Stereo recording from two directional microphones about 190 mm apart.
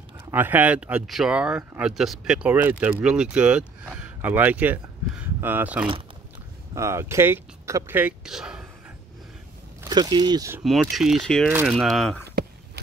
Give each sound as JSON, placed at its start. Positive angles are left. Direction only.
{"t": 0.3, "sound": "speech", "side_deg": -10}
{"t": 9.8, "sound": "speech", "side_deg": -20}
{"t": 10.6, "sound": "speech", "side_deg": 0}